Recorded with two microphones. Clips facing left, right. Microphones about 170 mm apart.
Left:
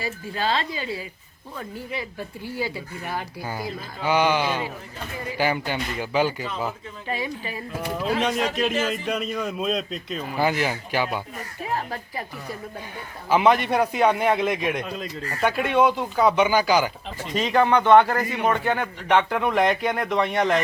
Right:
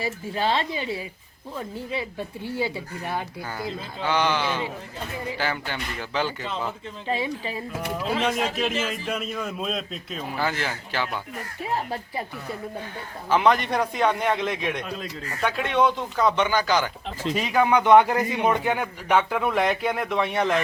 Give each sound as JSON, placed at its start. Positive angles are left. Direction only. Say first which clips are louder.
{"t": 0.0, "sound": "speech", "louder": "right 1 dB", "side_deg": -25}
{"t": 4.0, "sound": "a man's voice", "louder": "left 3 dB", "side_deg": 10}
{"t": 7.1, "sound": "speech", "louder": "right 2 dB", "side_deg": -25}
{"t": 7.9, "sound": "a man's voice", "louder": "left 2 dB", "side_deg": 0}
{"t": 10.3, "sound": "a man's voice", "louder": "left 5 dB", "side_deg": 15}
{"t": 13.3, "sound": "a man's voice", "louder": "left 2 dB", "side_deg": 5}
{"t": 17.3, "sound": "a man's voice", "louder": "left 2 dB", "side_deg": -10}